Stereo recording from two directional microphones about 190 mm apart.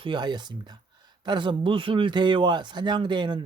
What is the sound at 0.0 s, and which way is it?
Speech, 25° right (ahead or behind).